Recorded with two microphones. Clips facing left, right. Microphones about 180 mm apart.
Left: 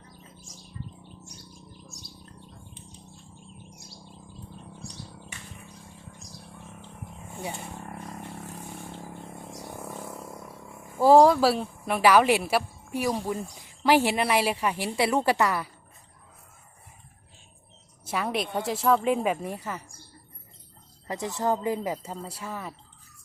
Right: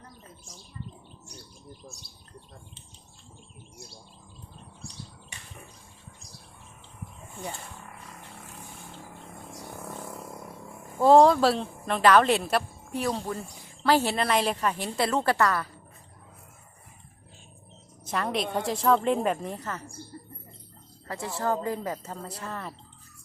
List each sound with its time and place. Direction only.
0.5 s bird: 60° right (ahead or behind)
7.9 s vehicle: 40° left (ahead or behind)
9.7 s a sound: 15° left (ahead or behind)
11.0 s a woman's voice: 5° left (ahead or behind)
18.0 s a woman's voice: 5° left (ahead or behind)
21.1 s a woman's voice: 20° left (ahead or behind)